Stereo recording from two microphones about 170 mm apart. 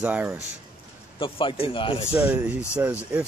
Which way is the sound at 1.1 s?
30° left (ahead or behind).